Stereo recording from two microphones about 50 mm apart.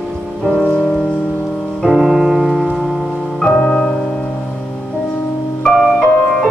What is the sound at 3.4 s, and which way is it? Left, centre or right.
Music, centre.